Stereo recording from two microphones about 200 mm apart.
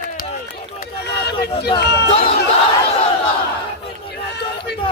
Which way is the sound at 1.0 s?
55° left (ahead or behind).